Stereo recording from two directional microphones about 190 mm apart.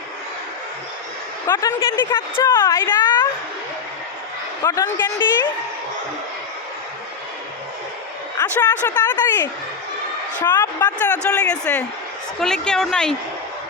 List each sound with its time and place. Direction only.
1.5 s a woman's voice: 20° left (ahead or behind)
4.6 s speech: 15° left (ahead or behind)
8.4 s speech: 10° left (ahead or behind)
10.4 s a woman's voice: 20° left (ahead or behind)
11.0 s a woman's voice: 5° left (ahead or behind)